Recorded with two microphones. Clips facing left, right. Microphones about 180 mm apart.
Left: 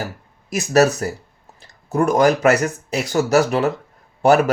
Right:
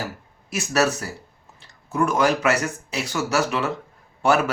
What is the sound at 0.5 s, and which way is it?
Speech, 40° left (ahead or behind).